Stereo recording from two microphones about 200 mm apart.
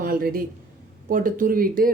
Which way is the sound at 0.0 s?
45° right (ahead or behind).